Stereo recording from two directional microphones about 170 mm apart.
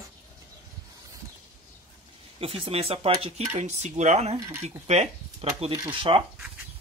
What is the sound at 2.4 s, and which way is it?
Speech, 30° right (ahead or behind).